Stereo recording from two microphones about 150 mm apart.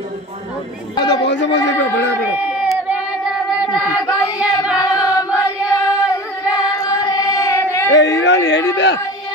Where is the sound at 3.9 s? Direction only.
25° left (ahead or behind).